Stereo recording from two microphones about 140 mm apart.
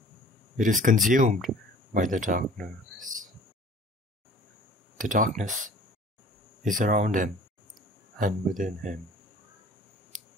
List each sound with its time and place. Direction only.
0.6 s speech: 70° right (ahead or behind)
3.0 s a sound: 70° right (ahead or behind)
4.9 s speech: 70° right (ahead or behind)
6.7 s speech: 65° right (ahead or behind)